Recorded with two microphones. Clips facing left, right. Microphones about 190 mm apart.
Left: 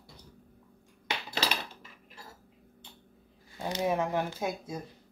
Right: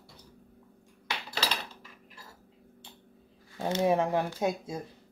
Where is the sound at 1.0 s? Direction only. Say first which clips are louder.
Left 1 dB; 20° left (ahead or behind).